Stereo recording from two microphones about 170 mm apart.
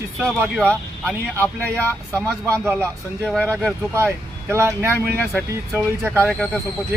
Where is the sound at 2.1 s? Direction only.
15° right (ahead or behind).